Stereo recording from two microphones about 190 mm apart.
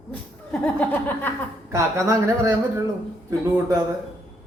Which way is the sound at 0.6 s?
10° left (ahead or behind).